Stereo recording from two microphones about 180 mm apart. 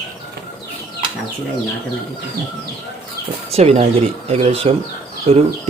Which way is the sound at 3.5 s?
35° right (ahead or behind).